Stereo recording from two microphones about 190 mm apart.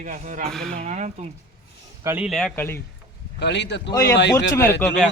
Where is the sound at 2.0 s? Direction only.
15° right (ahead or behind).